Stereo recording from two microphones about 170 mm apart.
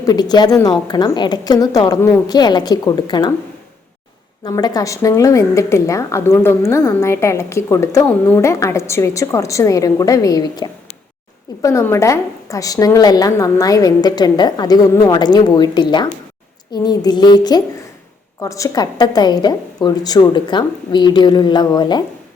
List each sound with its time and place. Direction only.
0.0 s a woman's voice: 25° left (ahead or behind)
4.4 s a woman's voice: 20° left (ahead or behind)